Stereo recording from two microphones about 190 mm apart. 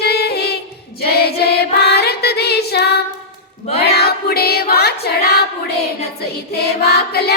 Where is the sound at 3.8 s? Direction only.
55° left (ahead or behind).